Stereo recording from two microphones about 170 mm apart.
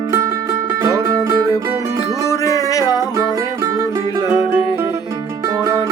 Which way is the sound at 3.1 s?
20° right (ahead or behind).